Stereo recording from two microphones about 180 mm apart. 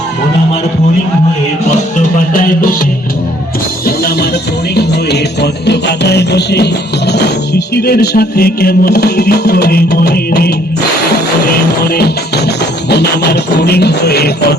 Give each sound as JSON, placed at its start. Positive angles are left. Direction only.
{"t": 2.3, "sound": "music", "side_deg": 50}
{"t": 3.8, "sound": "music", "side_deg": 60}
{"t": 7.7, "sound": "music", "side_deg": 60}